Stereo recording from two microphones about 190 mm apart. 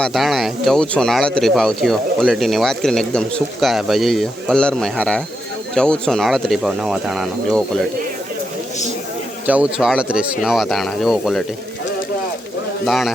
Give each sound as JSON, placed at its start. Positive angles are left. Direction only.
{"t": 0.0, "sound": "speech", "side_deg": 0}
{"t": 9.5, "sound": "speech", "side_deg": -5}
{"t": 12.8, "sound": "speech", "side_deg": 0}